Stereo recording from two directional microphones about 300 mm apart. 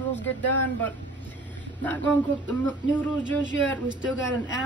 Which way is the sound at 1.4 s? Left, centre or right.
Centre.